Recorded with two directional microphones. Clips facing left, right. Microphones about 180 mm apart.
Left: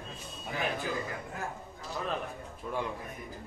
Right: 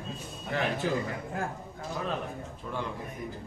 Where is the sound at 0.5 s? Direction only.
75° right (ahead or behind).